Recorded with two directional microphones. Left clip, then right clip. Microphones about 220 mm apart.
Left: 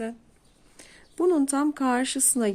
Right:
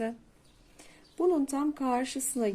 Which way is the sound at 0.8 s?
25° left (ahead or behind).